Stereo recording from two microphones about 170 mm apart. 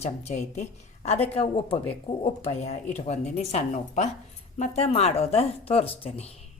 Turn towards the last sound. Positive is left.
turn(degrees=35)  # may be behind; listen again after turning